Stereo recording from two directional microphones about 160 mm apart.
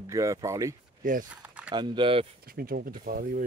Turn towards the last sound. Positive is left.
turn(degrees=-65)  # may be behind; listen again after turning